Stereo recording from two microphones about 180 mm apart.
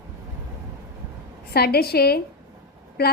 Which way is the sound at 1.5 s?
60° left (ahead or behind).